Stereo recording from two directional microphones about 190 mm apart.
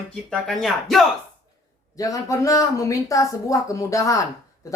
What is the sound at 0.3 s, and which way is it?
Speech, centre (ahead or behind).